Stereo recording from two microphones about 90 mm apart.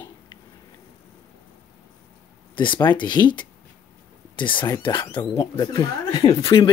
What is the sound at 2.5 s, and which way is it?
Speech, 60° left (ahead or behind).